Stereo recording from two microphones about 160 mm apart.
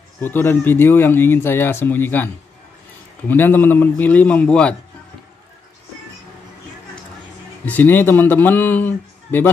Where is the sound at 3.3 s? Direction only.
10° left (ahead or behind).